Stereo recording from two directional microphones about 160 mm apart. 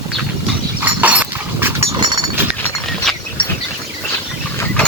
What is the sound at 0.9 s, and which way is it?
Dog, 10° right (ahead or behind).